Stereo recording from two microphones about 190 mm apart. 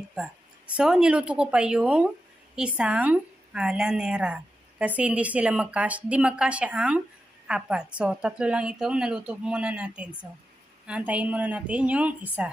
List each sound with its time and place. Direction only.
0.7 s a woman's voice: 5° right (ahead or behind)